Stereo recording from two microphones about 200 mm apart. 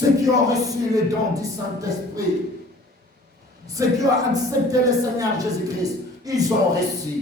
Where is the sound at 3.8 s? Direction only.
15° right (ahead or behind).